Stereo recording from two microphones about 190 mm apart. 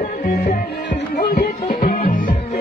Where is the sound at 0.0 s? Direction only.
40° left (ahead or behind).